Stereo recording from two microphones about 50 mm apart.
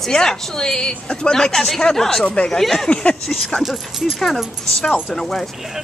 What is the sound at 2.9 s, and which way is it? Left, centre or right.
Speech, left.